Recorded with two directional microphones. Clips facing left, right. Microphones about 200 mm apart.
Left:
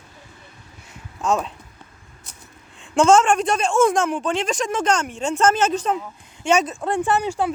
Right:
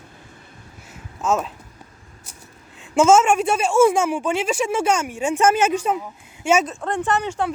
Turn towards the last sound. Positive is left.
turn(degrees=10)  # may be behind; listen again after turning